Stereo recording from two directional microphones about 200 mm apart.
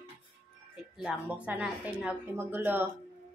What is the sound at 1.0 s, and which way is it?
Speech, 5° right (ahead or behind).